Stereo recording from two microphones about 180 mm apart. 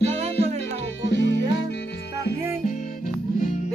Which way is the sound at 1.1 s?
80° left.